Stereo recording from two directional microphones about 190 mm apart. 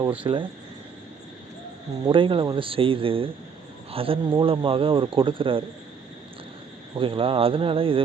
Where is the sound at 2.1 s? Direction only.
25° right (ahead or behind).